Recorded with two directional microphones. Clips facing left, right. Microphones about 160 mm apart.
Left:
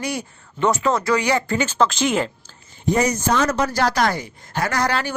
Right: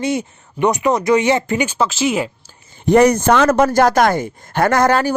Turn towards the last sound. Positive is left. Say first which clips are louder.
# right 8 dB
turn(degrees=-45)  # may be behind; listen again after turning